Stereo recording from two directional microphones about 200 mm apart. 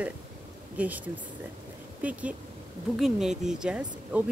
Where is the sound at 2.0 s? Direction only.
5° right (ahead or behind).